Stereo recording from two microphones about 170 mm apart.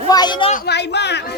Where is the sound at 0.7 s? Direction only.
80° left.